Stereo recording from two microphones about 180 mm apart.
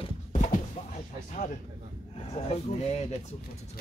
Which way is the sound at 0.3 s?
45° left (ahead or behind).